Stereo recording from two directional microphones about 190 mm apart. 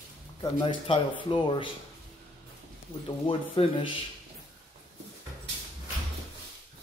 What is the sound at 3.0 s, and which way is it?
Speech, 25° left (ahead or behind).